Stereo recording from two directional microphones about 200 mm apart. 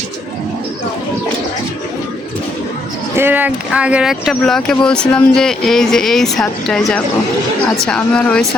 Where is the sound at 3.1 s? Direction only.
10° right (ahead or behind).